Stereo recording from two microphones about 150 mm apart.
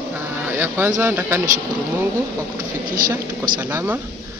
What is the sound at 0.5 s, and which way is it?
Speech, 15° right (ahead or behind).